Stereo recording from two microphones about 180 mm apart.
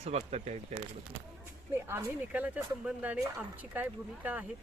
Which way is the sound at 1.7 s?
15° right (ahead or behind).